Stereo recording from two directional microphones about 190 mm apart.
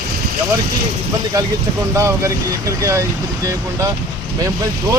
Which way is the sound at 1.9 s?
15° right (ahead or behind).